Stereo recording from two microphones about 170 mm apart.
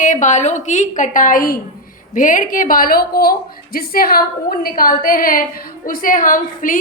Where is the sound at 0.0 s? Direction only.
45° left (ahead or behind).